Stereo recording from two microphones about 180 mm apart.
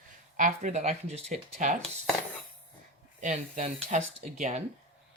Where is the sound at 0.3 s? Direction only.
45° right (ahead or behind).